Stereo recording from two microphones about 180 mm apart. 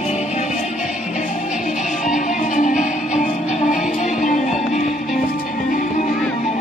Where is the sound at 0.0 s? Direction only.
40° left (ahead or behind).